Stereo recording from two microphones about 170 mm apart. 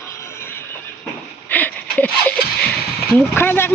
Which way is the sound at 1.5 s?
10° left (ahead or behind).